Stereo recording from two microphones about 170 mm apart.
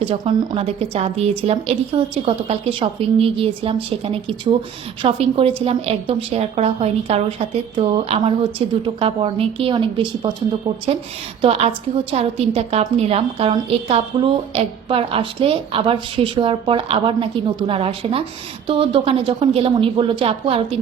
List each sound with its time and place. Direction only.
0.0 s a woman's voice: 35° right (ahead or behind)
11.4 s a woman's voice: 35° right (ahead or behind)